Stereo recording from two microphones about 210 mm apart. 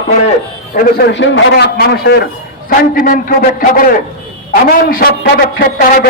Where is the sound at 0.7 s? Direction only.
55° left (ahead or behind).